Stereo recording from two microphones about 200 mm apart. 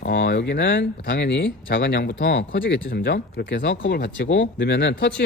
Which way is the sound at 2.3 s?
65° left (ahead or behind).